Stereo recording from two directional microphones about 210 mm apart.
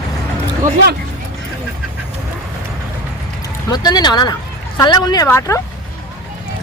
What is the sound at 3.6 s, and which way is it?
Speech, 20° left (ahead or behind).